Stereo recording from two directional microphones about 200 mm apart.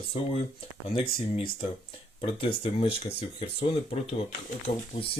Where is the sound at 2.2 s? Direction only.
25° left (ahead or behind).